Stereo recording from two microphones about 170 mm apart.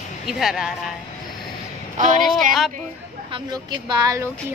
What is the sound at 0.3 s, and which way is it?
Speech, centre (ahead or behind).